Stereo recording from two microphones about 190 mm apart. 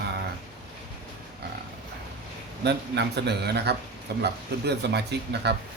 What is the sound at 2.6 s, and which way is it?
Speech, 60° right (ahead or behind).